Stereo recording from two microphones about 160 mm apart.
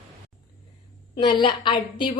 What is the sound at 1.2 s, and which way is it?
Speech, 30° left (ahead or behind).